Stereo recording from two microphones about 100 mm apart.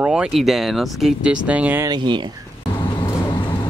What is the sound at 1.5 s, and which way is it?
Speech, 15° right (ahead or behind).